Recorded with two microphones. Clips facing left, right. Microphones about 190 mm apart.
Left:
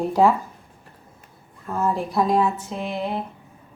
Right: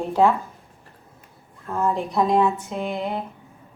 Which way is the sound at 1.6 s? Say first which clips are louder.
Even; centre (ahead or behind).